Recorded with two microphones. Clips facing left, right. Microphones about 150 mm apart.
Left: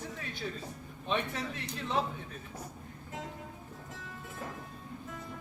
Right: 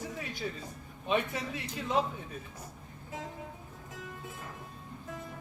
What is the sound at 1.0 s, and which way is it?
A man's voice, 10° right (ahead or behind).